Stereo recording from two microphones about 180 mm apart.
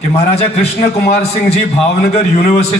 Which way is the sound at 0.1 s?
35° left (ahead or behind).